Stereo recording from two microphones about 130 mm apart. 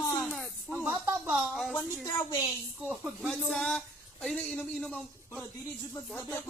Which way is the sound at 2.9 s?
10° right (ahead or behind).